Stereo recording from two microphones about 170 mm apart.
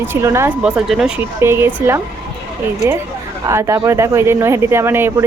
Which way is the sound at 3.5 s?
15° right (ahead or behind).